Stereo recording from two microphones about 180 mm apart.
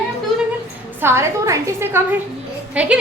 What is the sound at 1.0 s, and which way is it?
A woman's voice, 15° right (ahead or behind).